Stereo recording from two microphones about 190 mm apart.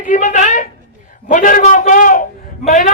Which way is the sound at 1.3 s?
45° left (ahead or behind).